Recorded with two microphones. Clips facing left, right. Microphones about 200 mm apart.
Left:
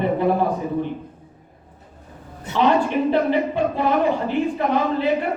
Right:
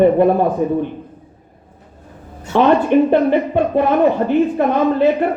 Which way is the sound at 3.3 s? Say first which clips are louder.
Right 5 dB; 55° right (ahead or behind).